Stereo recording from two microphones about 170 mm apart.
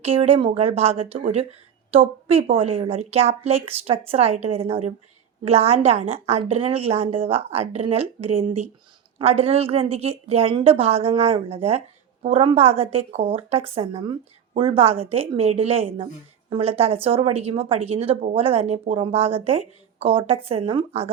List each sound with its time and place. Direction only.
0.0 s speech: 35° right (ahead or behind)